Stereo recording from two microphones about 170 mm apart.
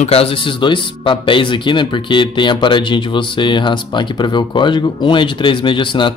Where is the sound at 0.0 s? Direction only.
35° left (ahead or behind).